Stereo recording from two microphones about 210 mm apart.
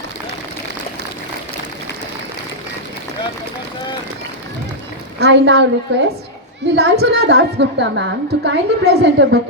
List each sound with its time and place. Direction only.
5.2 s a woman's voice: 55° right (ahead or behind)